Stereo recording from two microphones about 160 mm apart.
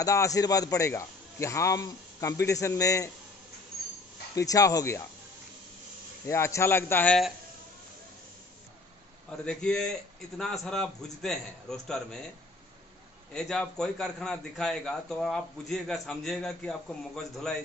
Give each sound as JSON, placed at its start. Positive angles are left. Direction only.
{"t": 0.0, "sound": "a man's voice", "side_deg": 20}
{"t": 4.4, "sound": "a man's voice", "side_deg": 20}
{"t": 6.2, "sound": "speech", "side_deg": 15}
{"t": 9.4, "sound": "a man's voice", "side_deg": 5}
{"t": 13.3, "sound": "a man's voice", "side_deg": 5}